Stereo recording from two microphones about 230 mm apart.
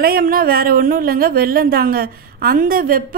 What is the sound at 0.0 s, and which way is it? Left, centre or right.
A woman's voice, right.